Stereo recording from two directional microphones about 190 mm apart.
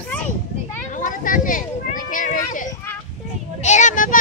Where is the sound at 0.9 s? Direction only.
45° left (ahead or behind).